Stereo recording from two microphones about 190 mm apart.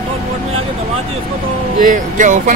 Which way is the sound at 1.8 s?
40° right (ahead or behind).